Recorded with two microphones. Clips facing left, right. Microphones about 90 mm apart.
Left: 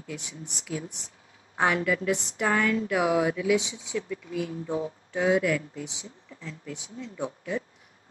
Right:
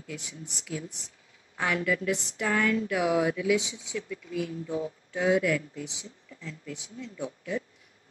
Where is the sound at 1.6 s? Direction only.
35° left (ahead or behind).